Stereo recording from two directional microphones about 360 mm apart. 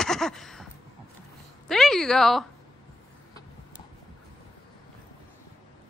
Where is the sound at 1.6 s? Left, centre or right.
Centre.